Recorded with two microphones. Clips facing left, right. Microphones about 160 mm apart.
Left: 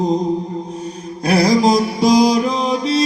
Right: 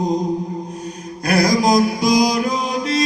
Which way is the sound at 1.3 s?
30° left (ahead or behind).